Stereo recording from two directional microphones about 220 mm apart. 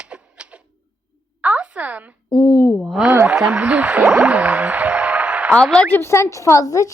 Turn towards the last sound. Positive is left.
turn(degrees=15)  # may be behind; listen again after turning